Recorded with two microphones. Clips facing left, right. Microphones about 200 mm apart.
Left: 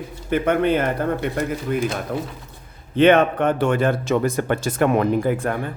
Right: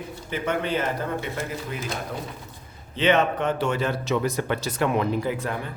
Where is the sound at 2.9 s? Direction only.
55° left (ahead or behind).